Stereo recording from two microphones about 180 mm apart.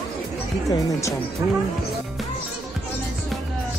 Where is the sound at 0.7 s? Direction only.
15° left (ahead or behind).